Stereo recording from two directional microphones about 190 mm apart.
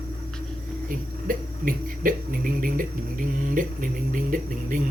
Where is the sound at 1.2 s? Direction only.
50° right (ahead or behind).